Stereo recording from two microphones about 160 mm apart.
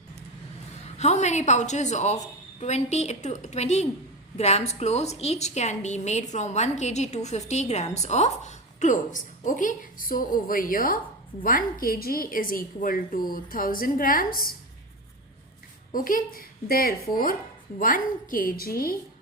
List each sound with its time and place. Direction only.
0.9 s a woman's voice: 45° left (ahead or behind); by 14.5 s 65° left (ahead or behind)
15.9 s a woman's voice: 60° left (ahead or behind)